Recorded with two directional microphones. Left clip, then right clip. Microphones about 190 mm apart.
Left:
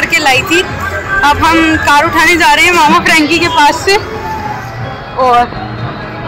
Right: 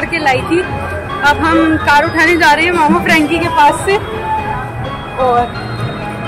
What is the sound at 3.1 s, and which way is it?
Speech, 30° left (ahead or behind).